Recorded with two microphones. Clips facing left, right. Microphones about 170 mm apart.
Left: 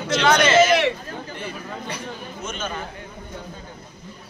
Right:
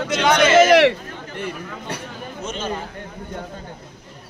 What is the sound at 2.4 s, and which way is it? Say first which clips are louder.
Speech: right 3 dB; 35° right (ahead or behind).